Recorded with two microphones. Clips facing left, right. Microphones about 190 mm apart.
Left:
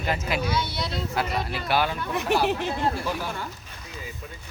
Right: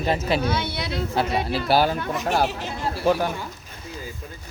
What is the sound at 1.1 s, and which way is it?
Speech, 30° right (ahead or behind).